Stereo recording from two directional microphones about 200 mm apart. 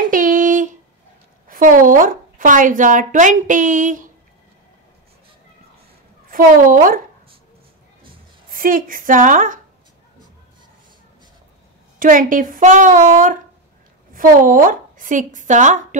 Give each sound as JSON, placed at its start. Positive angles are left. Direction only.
{"t": 0.1, "sound": "a sound", "side_deg": -40}
{"t": 1.5, "sound": "a woman's voice", "side_deg": -40}
{"t": 6.3, "sound": "a woman's voice", "side_deg": -45}
{"t": 8.5, "sound": "a woman's voice", "side_deg": -45}
{"t": 12.0, "sound": "a woman's voice", "side_deg": -40}